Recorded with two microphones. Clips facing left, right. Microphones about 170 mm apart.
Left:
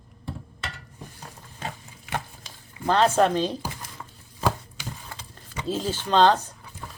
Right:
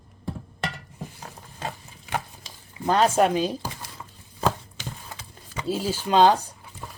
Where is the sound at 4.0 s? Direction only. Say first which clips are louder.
Left 1 dB; 5° right (ahead or behind).